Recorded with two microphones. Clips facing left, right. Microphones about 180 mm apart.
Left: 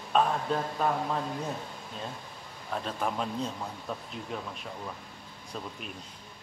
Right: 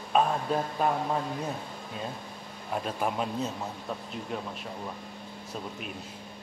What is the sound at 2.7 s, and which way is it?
Speech, 10° right (ahead or behind).